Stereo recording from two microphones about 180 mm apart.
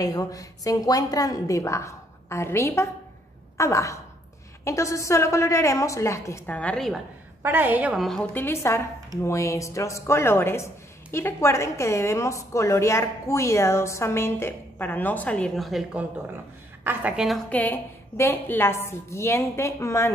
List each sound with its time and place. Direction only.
0.0 s a woman's voice: 20° left (ahead or behind); by 7.0 s 5° left (ahead or behind)
7.4 s a woman's voice: 10° right (ahead or behind)
17.5 s speech: 10° left (ahead or behind)